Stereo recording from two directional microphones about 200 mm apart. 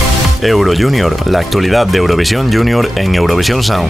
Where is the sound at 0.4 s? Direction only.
Centre (ahead or behind).